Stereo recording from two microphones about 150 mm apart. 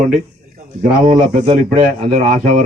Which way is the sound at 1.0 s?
50° right (ahead or behind).